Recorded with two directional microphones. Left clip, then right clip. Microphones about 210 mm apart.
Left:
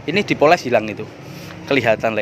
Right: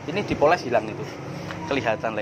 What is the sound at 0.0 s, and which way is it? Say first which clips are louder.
Speech: left 6 dB; 55° left (ahead or behind).